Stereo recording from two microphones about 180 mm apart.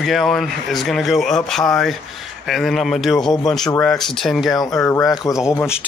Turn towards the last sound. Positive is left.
turn(degrees=20)  # may be behind; listen again after turning